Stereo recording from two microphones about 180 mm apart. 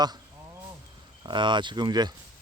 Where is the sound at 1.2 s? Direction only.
25° right (ahead or behind).